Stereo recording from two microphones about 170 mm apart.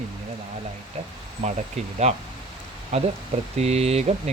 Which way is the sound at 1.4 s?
35° right (ahead or behind).